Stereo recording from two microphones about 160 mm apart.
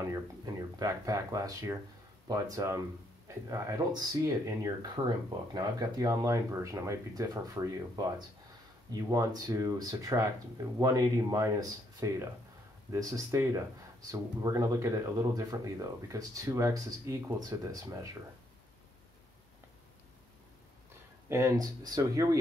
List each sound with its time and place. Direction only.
0.0 s speech: 20° right (ahead or behind)
21.3 s speech: 15° right (ahead or behind)